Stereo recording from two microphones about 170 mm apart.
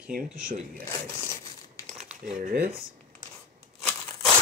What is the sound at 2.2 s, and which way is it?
Speech, 55° right (ahead or behind).